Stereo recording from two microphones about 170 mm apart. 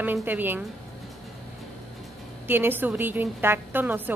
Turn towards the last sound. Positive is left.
turn(degrees=-10)  # may be behind; listen again after turning